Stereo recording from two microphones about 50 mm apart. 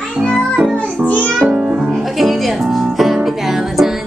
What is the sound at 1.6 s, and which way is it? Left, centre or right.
Music, centre.